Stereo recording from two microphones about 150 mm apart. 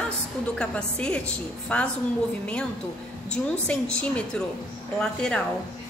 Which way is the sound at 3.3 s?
5° left (ahead or behind).